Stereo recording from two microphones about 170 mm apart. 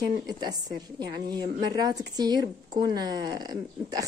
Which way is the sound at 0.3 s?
25° right (ahead or behind).